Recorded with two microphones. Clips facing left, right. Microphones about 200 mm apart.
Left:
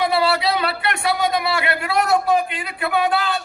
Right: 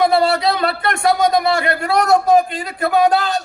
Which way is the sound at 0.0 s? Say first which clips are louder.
Right 4 dB; 45° right (ahead or behind).